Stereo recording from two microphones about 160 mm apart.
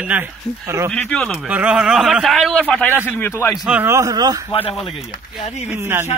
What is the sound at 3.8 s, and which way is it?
Speech, 20° right (ahead or behind).